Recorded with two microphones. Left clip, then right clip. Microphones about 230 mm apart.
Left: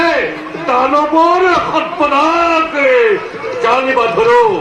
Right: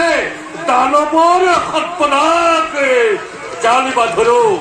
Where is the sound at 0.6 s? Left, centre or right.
Right.